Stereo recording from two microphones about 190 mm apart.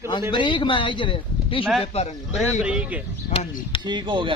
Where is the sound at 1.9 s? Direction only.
35° left (ahead or behind).